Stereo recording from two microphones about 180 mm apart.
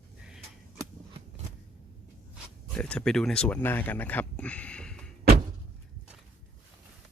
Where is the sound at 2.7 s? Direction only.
5° left (ahead or behind).